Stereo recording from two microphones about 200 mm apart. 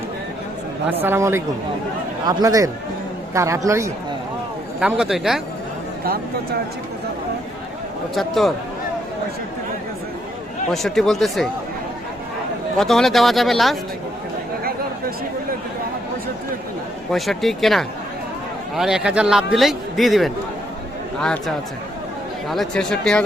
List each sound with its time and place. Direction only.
1.0 s a man's voice: 10° right (ahead or behind)
8.1 s a man's voice: centre (ahead or behind)
10.7 s a man's voice: centre (ahead or behind)
12.7 s a man's voice: centre (ahead or behind)
14.6 s chatter: 45° right (ahead or behind)
17.1 s a man's voice: centre (ahead or behind)